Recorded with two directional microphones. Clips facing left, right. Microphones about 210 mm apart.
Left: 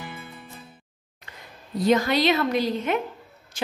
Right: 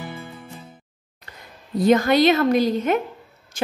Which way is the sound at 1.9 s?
50° right (ahead or behind).